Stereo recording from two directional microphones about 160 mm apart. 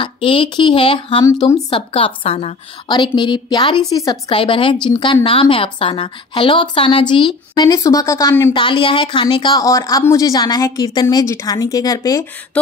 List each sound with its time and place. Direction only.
0.0 s a woman's voice: 30° left (ahead or behind)
1.2 s a woman's voice: 20° left (ahead or behind)
1.7 s a woman's voice: 35° left (ahead or behind); by 8.5 s 15° left (ahead or behind)
8.5 s a woman's voice: 30° left (ahead or behind)